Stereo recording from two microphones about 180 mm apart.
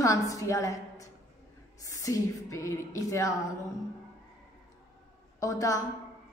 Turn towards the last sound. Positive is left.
turn(degrees=20)  # may be behind; listen again after turning